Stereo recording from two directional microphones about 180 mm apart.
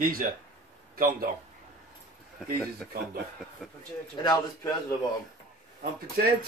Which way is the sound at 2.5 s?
Centre (ahead or behind).